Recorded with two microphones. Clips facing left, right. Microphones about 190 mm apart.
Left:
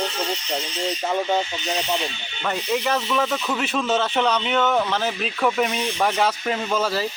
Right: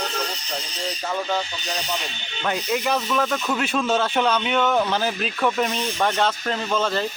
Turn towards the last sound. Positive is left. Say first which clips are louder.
# even
turn(degrees=5)  # may be behind; listen again after turning